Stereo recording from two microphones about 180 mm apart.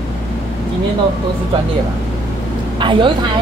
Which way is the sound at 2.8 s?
25° right (ahead or behind).